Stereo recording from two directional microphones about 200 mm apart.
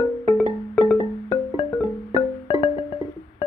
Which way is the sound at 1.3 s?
15° left (ahead or behind).